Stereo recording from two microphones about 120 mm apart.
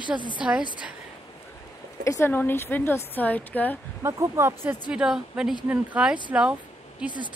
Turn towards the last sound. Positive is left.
turn(degrees=-10)  # may be behind; listen again after turning